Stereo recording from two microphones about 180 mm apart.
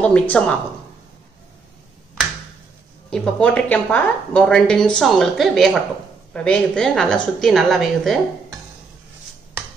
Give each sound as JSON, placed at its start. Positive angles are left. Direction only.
{"t": 0.0, "sound": "a woman's voice", "side_deg": 5}
{"t": 3.1, "sound": "a woman's voice", "side_deg": 5}